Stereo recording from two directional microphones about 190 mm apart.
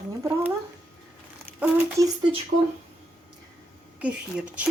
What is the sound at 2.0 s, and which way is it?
Speech, 15° right (ahead or behind).